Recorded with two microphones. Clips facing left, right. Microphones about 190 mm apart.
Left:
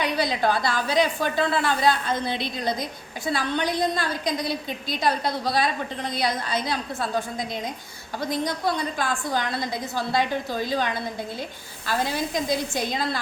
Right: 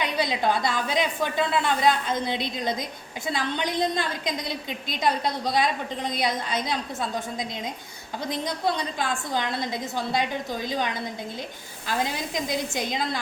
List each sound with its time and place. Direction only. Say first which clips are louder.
0.0 s a woman's voice: left 2 dB; 20° right (ahead or behind)
8.3 s a woman's voice: left 1 dB; 20° right (ahead or behind)
11.9 s a woman's voice: left 2 dB; 20° right (ahead or behind)